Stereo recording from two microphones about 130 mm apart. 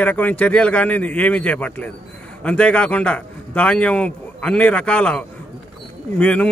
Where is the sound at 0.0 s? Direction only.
10° left (ahead or behind).